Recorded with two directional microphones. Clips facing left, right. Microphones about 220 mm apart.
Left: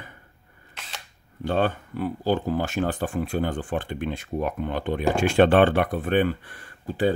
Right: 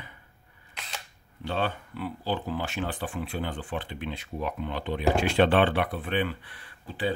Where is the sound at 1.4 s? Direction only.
45° left (ahead or behind).